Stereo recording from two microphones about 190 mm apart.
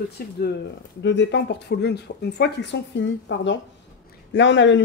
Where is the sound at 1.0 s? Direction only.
70° left (ahead or behind).